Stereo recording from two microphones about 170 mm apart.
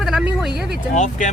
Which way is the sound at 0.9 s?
45° left (ahead or behind).